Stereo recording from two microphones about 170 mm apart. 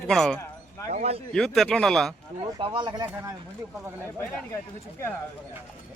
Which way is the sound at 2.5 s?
25° right (ahead or behind).